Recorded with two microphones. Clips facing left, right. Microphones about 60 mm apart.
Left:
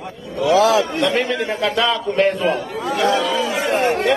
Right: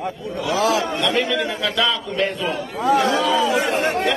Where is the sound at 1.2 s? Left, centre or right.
Left.